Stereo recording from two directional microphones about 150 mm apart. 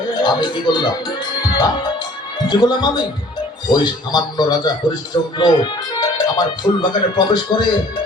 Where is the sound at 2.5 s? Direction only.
30° left (ahead or behind).